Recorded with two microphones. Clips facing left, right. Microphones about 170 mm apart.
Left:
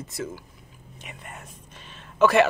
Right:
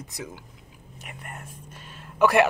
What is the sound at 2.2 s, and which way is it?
Speech, 15° right (ahead or behind).